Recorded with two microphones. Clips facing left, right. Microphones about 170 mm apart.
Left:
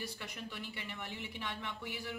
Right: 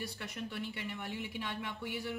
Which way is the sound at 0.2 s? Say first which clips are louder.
Right 4 dB; centre (ahead or behind).